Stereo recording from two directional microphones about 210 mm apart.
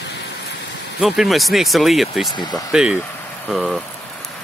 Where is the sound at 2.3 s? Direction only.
20° left (ahead or behind).